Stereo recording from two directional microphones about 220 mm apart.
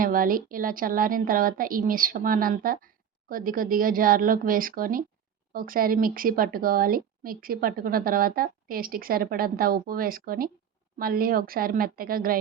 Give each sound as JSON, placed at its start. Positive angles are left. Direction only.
{"t": 0.0, "sound": "a woman's voice", "side_deg": -40}